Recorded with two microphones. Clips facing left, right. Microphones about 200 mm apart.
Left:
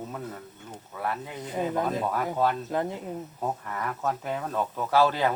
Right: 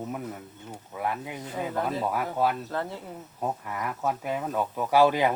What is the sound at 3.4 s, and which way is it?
Speech, 10° right (ahead or behind).